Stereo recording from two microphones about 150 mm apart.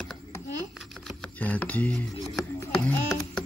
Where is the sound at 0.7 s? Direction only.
Centre (ahead or behind).